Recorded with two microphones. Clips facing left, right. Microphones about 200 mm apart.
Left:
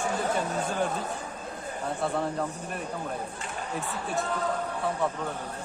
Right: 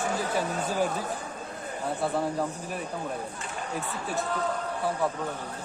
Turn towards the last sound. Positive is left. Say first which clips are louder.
# even
turn(degrees=0)  # may be behind; listen again after turning